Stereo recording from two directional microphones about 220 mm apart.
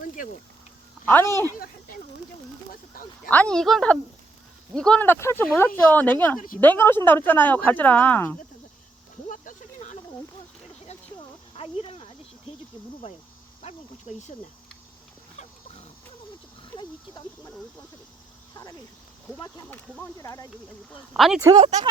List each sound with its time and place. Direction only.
0.2 s speech: 40° left (ahead or behind)
1.0 s speech: 10° left (ahead or behind)
1.5 s speech: 40° left (ahead or behind)
3.2 s speech: 5° left (ahead or behind)
9.3 s a sound: 35° left (ahead or behind)
14.1 s speech: 35° left (ahead or behind)
19.4 s speech: 10° left (ahead or behind)
21.1 s speech: 5° right (ahead or behind)
21.4 s speech: 20° right (ahead or behind)